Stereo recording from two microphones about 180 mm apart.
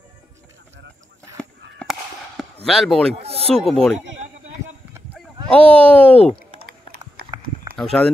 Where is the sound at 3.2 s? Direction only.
35° right (ahead or behind).